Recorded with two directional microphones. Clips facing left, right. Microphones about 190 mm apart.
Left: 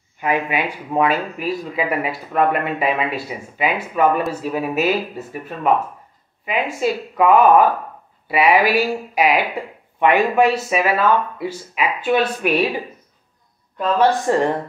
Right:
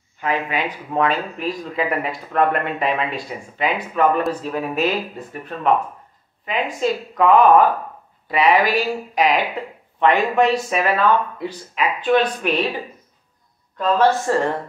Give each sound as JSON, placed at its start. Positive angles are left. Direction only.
{"t": 0.2, "sound": "speech", "side_deg": 10}
{"t": 13.7, "sound": "speech", "side_deg": 15}